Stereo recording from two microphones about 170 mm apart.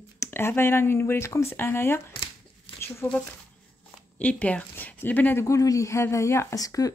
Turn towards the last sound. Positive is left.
turn(degrees=20)  # may be behind; listen again after turning